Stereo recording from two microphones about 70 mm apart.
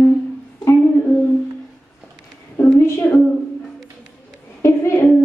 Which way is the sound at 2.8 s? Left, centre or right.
Left.